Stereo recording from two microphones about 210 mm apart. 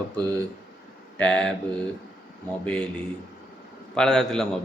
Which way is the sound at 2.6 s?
5° left (ahead or behind).